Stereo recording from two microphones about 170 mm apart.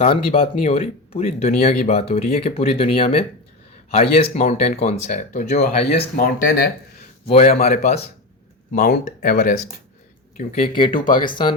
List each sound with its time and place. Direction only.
0.0 s speech: 35° left (ahead or behind)
6.4 s speech: 75° left (ahead or behind)
7.3 s speech: 35° left (ahead or behind)
7.6 s speech: 50° left (ahead or behind)
9.0 s speech: 55° left (ahead or behind)
10.3 s speech: 40° left (ahead or behind)
10.7 s speech: 30° left (ahead or behind)